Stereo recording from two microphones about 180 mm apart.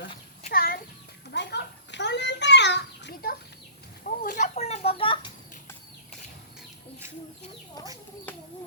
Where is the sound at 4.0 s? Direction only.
45° left (ahead or behind); by 5.3 s 30° left (ahead or behind).